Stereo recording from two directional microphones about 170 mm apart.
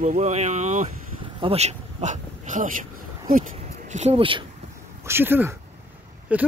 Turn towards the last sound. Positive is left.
turn(degrees=-10)  # may be behind; listen again after turning